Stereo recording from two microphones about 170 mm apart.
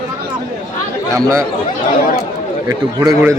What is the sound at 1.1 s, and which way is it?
Speech, 20° right (ahead or behind).